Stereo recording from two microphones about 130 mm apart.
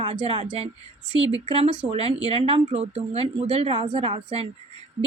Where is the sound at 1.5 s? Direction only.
50° right (ahead or behind).